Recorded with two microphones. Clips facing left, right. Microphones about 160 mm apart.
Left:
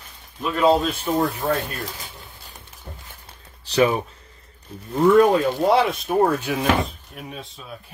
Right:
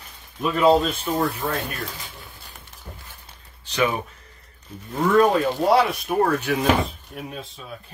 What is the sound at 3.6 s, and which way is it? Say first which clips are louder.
Speech: left 5 dB; 35° left (ahead or behind).